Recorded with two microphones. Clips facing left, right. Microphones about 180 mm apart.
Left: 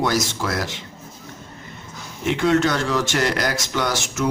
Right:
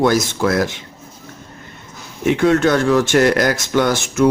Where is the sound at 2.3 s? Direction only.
55° right (ahead or behind).